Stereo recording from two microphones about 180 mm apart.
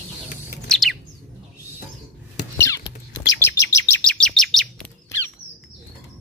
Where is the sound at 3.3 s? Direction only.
15° left (ahead or behind).